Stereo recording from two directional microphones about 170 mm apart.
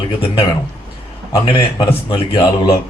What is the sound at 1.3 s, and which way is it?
A man's voice, 30° left (ahead or behind).